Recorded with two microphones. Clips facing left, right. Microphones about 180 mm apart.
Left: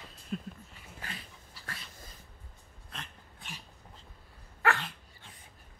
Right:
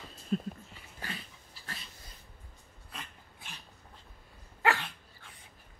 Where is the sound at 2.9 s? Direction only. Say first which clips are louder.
Even; 5° right (ahead or behind).